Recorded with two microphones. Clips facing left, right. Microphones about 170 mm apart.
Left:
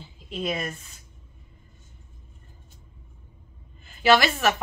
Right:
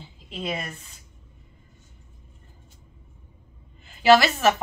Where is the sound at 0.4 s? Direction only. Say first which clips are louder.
Left 2 dB; 25° right (ahead or behind).